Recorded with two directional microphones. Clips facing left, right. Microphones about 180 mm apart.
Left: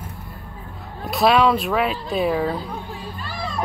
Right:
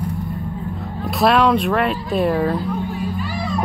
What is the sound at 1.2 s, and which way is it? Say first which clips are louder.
Speech: right 1 dB; centre (ahead or behind).